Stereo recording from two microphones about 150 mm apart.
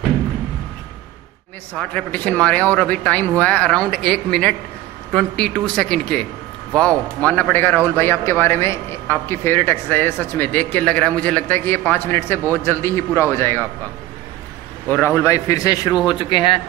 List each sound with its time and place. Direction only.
1.8 s speech: 10° left (ahead or behind)
14.9 s a man's voice: 10° left (ahead or behind); by 16.6 s 35° left (ahead or behind)